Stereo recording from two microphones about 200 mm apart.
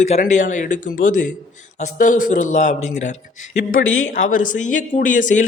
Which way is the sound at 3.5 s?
80° left.